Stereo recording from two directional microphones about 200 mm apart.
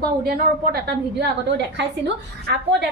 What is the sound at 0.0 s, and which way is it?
Speech, 50° right (ahead or behind).